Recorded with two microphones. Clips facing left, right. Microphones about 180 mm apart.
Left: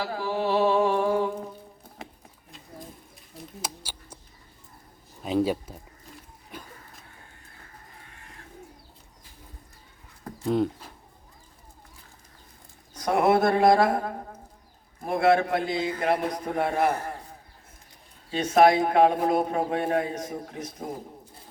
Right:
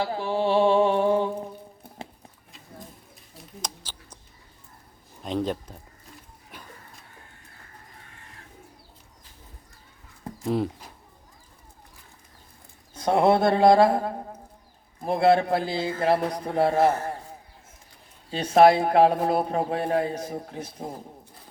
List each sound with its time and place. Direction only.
0.0 s a sound: 25° right (ahead or behind)
3.3 s a sound: 10° left (ahead or behind)
5.2 s speech: 5° left (ahead or behind)
10.4 s speech: centre (ahead or behind)
12.9 s speech: 30° right (ahead or behind)
18.3 s speech: 35° right (ahead or behind)